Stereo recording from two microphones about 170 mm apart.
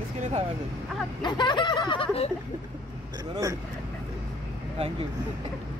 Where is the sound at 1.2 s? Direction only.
25° left (ahead or behind).